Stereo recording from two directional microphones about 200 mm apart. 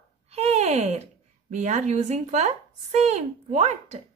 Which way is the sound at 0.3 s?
35° right (ahead or behind).